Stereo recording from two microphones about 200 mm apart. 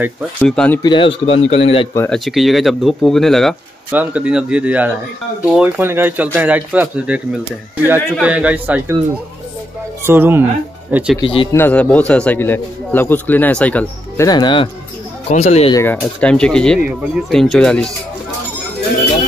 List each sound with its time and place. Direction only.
0.4 s speech: 5° left (ahead or behind)
0.8 s a man's voice: 25° left (ahead or behind)
2.0 s speech: centre (ahead or behind)
10.0 s speech: 10° right (ahead or behind)
11.1 s a man's voice: 25° left (ahead or behind)
11.5 s a man's voice: 10° left (ahead or behind); by 15.7 s 35° left (ahead or behind)
15.7 s speech: 10° left (ahead or behind)